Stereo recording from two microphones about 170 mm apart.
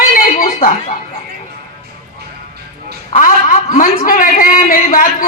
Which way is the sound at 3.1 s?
50° left (ahead or behind).